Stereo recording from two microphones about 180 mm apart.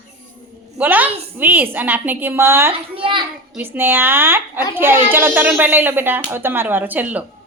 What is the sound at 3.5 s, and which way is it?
A woman's voice, 10° right (ahead or behind).